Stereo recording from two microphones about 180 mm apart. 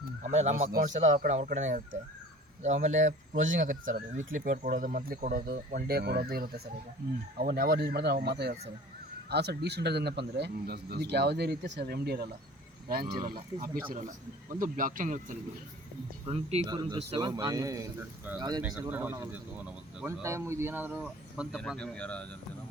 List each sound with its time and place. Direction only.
0.3 s a man's voice: 40° right (ahead or behind)
16.2 s speech: 35° right (ahead or behind)
16.6 s a man's voice: 25° right (ahead or behind)
18.6 s speech: 10° right (ahead or behind)
21.5 s speech: 5° left (ahead or behind)